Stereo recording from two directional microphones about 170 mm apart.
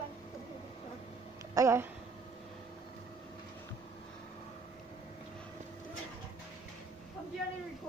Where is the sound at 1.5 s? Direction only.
15° right (ahead or behind).